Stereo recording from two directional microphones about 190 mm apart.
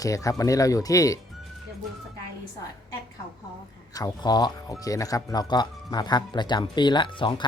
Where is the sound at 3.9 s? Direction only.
20° left (ahead or behind).